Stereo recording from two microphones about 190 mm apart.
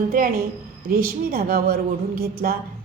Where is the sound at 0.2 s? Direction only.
45° right (ahead or behind).